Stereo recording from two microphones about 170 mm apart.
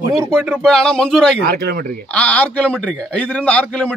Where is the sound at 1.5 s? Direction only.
65° right (ahead or behind).